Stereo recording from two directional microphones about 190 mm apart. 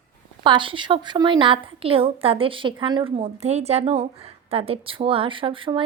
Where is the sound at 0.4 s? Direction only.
25° right (ahead or behind).